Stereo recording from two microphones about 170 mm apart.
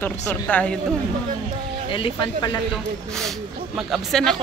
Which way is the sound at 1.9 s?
30° left (ahead or behind).